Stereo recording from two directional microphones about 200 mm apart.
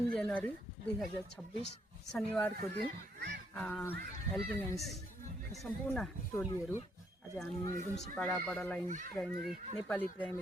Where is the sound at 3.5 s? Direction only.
5° left (ahead or behind).